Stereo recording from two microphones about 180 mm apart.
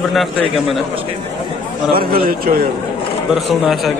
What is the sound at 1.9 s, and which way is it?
Speech, 55° right (ahead or behind).